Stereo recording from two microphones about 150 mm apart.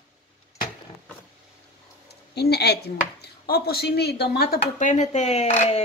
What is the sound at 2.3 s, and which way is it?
A woman's voice, 90° left.